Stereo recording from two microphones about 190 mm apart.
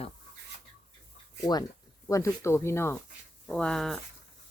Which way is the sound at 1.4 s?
20° left (ahead or behind).